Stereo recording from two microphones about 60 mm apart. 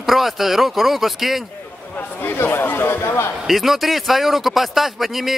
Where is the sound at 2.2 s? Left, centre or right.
Left.